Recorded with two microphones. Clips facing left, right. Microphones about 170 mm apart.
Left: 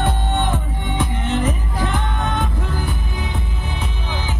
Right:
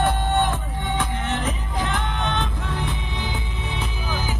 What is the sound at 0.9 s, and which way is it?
Music, 15° left (ahead or behind).